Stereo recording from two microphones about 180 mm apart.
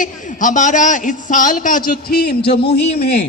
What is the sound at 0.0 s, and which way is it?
A man's voice, 45° left (ahead or behind).